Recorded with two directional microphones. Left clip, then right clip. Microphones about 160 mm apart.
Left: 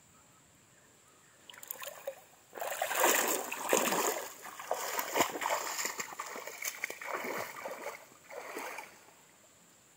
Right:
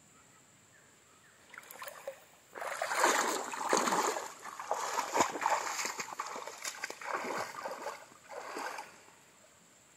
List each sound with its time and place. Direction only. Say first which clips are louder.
2.5 s boat: even; 55° left (ahead or behind); by 3.3 s 35° left (ahead or behind)
3.4 s a sound: even; 35° left (ahead or behind)
4.0 s splash: right 1 dB; 20° left (ahead or behind)